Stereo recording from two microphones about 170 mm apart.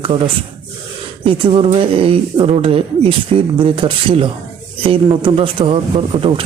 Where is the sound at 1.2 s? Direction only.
30° right (ahead or behind).